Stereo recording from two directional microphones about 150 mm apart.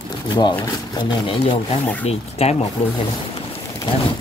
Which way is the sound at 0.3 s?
30° left (ahead or behind).